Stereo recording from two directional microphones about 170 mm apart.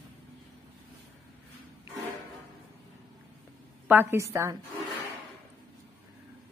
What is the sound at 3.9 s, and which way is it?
Speech, 10° right (ahead or behind).